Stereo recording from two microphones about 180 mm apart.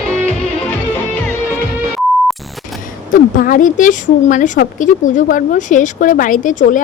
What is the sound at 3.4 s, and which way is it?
Speech, 50° left (ahead or behind).